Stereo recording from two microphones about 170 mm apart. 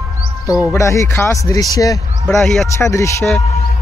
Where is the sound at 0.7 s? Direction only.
15° left (ahead or behind).